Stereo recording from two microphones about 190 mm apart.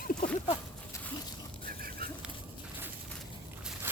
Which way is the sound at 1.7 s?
50° right (ahead or behind).